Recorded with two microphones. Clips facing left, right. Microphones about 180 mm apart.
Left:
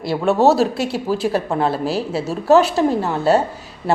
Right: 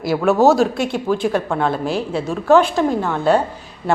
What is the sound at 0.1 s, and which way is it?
A woman's voice, 30° left (ahead or behind).